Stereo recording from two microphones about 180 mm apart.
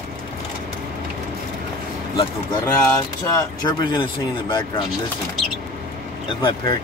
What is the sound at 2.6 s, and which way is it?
Speech, 15° left (ahead or behind).